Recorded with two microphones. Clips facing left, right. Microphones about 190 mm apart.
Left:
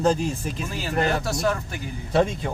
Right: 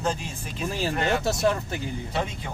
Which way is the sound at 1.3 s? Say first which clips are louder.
Right 1 dB; 25° right (ahead or behind).